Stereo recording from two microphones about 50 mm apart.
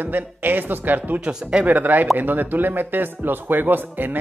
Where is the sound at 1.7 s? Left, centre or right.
Right.